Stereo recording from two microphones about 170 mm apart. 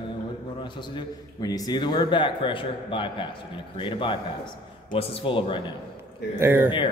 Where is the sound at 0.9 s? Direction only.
20° left (ahead or behind).